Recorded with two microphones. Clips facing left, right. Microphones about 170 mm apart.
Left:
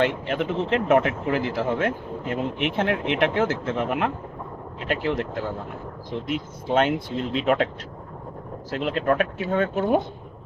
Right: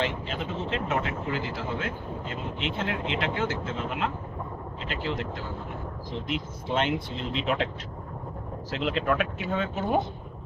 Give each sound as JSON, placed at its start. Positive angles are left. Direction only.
{"t": 0.0, "sound": "speech", "side_deg": 65}
{"t": 8.7, "sound": "speech", "side_deg": 45}